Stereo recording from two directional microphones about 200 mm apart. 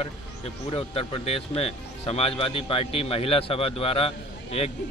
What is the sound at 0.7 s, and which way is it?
Speech, 30° left (ahead or behind).